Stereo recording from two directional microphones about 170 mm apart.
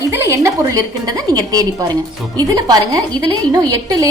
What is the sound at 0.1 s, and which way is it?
A woman's voice, 15° right (ahead or behind).